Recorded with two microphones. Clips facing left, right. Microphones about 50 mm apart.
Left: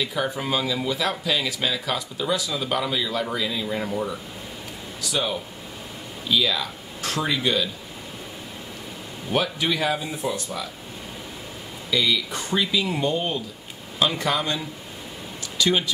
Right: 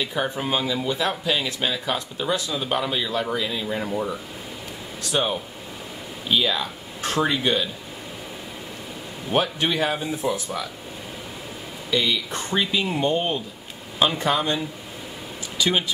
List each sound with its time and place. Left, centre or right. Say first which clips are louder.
0.0 s speech: even; centre
3.6 s speech: even; centre
5.1 s speech: right 2 dB; right
9.3 s speech: right 1 dB; right
12.0 s speech: left 3 dB; right
15.5 s a sound: left 1 dB; centre